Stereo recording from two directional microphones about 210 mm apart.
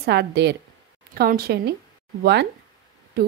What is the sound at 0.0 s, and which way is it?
A woman's voice, 50° right (ahead or behind).